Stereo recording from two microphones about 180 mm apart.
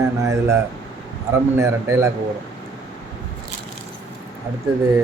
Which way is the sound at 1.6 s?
15° right (ahead or behind).